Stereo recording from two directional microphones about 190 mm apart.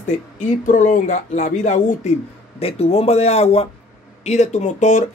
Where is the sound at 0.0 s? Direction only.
45° left (ahead or behind).